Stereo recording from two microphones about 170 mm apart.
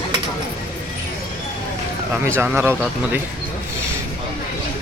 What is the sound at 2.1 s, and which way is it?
Speech, 15° right (ahead or behind).